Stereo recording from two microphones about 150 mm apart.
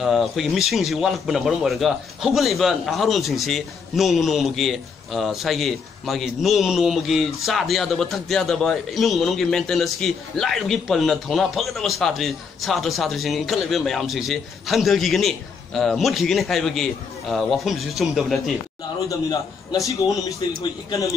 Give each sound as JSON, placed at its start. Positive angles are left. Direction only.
{"t": 0.0, "sound": "speech", "side_deg": 0}
{"t": 19.0, "sound": "a man's voice", "side_deg": 25}